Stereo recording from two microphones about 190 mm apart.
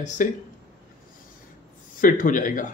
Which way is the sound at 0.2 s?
45° left (ahead or behind).